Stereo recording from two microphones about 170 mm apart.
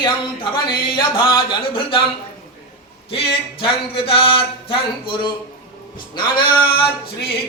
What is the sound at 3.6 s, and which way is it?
Speech, 35° left (ahead or behind).